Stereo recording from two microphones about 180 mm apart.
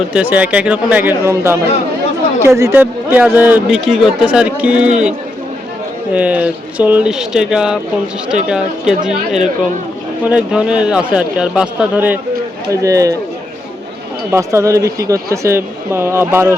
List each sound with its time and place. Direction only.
0.1 s a man's voice: 10° right (ahead or behind)
6.1 s a man's voice: 10° right (ahead or behind)
14.3 s a man's voice: 15° right (ahead or behind)